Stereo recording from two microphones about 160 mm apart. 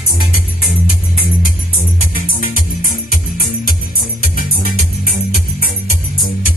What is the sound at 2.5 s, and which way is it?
Music, 60° right (ahead or behind).